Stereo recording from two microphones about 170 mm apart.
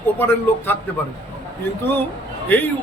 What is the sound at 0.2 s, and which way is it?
Speech, 10° left (ahead or behind).